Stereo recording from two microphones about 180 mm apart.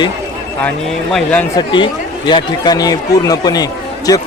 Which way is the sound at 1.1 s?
5° left (ahead or behind).